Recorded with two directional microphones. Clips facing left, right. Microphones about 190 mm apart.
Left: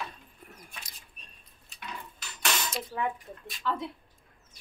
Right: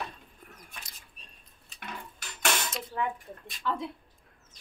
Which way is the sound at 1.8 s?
50° right (ahead or behind).